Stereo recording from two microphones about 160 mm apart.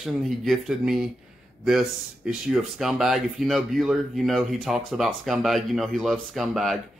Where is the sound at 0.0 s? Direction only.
Centre (ahead or behind).